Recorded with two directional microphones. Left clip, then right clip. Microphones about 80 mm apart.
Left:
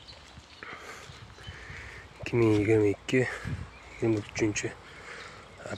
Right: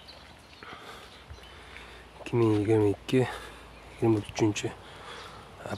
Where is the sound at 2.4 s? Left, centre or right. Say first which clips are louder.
Left 1 dB; centre.